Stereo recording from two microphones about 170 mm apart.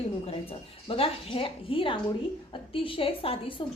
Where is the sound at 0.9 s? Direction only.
35° left (ahead or behind).